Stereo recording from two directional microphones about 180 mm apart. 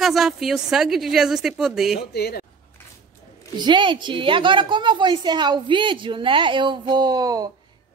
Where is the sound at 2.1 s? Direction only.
60° left (ahead or behind).